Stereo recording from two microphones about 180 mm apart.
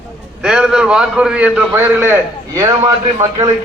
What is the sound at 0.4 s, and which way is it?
A man's voice, 5° right (ahead or behind).